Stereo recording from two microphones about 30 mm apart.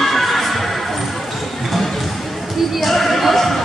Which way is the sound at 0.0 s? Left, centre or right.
Centre.